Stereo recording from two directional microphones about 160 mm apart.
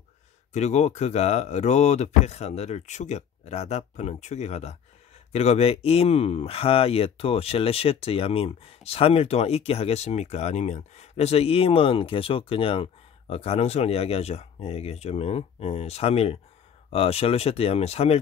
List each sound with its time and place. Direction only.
0.5 s speech: 45° left (ahead or behind)